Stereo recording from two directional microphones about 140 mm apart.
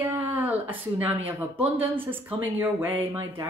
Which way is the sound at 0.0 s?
15° right (ahead or behind).